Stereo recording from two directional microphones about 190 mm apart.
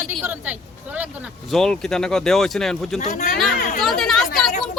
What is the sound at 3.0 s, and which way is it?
Speech, 40° left (ahead or behind).